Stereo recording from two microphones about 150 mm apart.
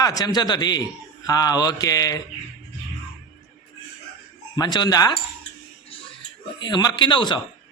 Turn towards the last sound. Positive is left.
turn(degrees=30)  # may be behind; listen again after turning